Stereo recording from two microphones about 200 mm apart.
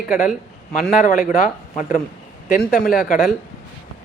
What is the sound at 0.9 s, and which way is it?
Speech, 40° left (ahead or behind).